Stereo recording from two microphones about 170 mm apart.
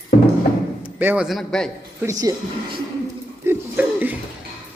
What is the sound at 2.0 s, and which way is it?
Speech, 20° right (ahead or behind).